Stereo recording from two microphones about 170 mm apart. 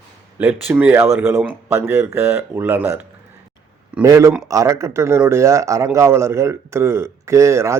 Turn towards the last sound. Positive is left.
turn(degrees=-15)  # may be behind; listen again after turning